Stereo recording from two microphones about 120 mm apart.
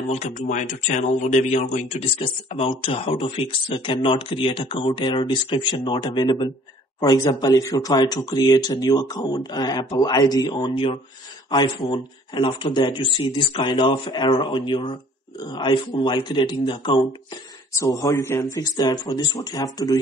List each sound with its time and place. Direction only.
0.1 s speech: 90° left; by 17.0 s 40° left (ahead or behind)
17.7 s a man's voice: 30° left (ahead or behind)
18.4 s speech: 30° left (ahead or behind)